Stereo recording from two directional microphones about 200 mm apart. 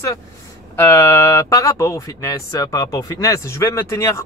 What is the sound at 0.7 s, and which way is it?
Speech, 10° left (ahead or behind).